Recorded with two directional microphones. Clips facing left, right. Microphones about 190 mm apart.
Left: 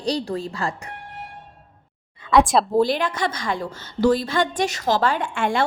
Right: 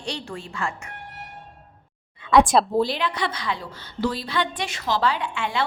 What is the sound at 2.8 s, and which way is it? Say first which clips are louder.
A woman's voice: left 4 dB; 50° left (ahead or behind).